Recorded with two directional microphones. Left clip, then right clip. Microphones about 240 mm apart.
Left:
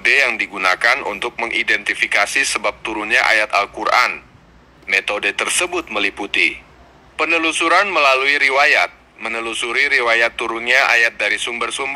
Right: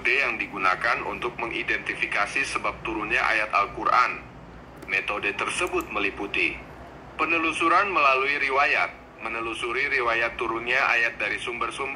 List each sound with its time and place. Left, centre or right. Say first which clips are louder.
0.0 s a man's voice: left 9 dB; left